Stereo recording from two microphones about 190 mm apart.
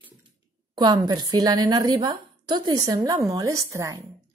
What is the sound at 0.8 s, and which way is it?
A woman's voice, 20° right (ahead or behind).